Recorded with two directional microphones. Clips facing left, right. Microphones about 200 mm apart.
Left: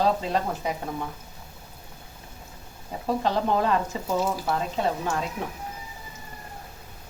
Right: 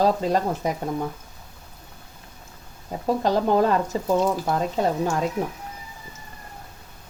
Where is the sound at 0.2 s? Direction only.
45° right (ahead or behind).